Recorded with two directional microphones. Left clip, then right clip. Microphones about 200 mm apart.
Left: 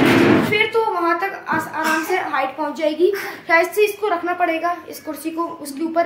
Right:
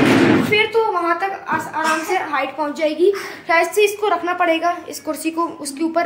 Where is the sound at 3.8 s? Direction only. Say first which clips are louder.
Right 2 dB; 35° right (ahead or behind).